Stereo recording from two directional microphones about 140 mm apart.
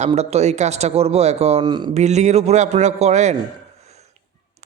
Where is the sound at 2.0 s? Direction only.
55° right (ahead or behind).